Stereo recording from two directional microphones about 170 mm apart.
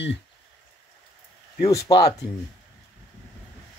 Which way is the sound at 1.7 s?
20° left (ahead or behind).